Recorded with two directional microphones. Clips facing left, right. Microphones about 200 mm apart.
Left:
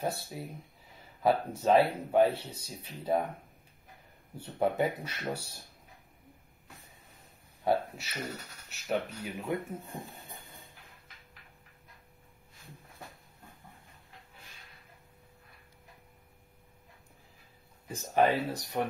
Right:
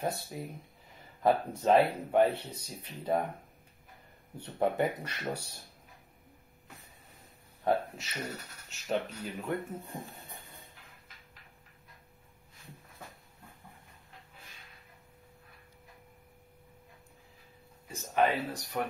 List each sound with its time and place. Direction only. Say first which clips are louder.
0.0 s speech: even; 5° left (ahead or behind)
4.4 s speech: even; 5° left (ahead or behind)
7.6 s speech: left 1 dB; centre (ahead or behind)
18.1 s speech: left 2 dB; 25° left (ahead or behind)